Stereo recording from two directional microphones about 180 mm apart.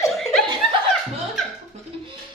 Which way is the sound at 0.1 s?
Centre (ahead or behind).